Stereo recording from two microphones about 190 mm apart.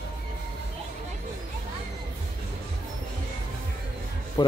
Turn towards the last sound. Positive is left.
turn(degrees=20)  # may be behind; listen again after turning